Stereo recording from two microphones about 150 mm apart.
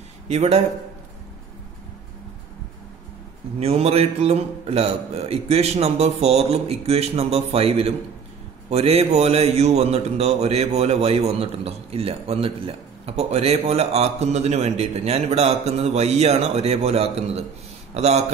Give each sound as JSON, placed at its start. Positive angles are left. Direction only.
{"t": 0.3, "sound": "a man's voice", "side_deg": -45}
{"t": 3.5, "sound": "a man's voice", "side_deg": -45}